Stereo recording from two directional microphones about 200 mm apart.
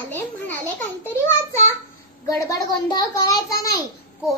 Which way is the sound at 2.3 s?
15° left (ahead or behind).